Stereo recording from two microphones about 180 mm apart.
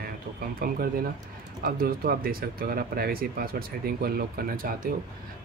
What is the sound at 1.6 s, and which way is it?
Speech, 55° right (ahead or behind).